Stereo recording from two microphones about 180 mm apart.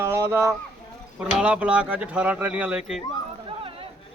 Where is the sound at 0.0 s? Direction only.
15° right (ahead or behind).